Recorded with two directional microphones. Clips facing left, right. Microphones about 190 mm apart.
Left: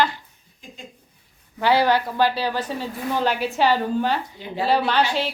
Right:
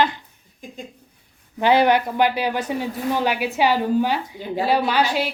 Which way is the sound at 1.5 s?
20° right (ahead or behind).